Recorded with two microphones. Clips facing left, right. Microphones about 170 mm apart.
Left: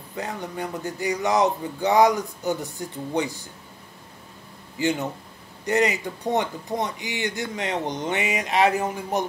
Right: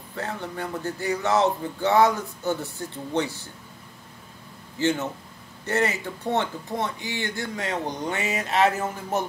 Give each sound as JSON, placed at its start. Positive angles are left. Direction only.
{"t": 0.1, "sound": "speech", "side_deg": 15}
{"t": 4.7, "sound": "speech", "side_deg": 15}